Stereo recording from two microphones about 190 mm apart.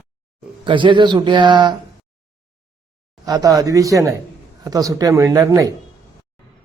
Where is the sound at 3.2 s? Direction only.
20° right (ahead or behind).